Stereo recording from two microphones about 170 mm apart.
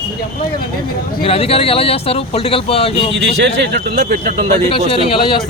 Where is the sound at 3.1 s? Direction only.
90° right; by 4.2 s 65° right (ahead or behind).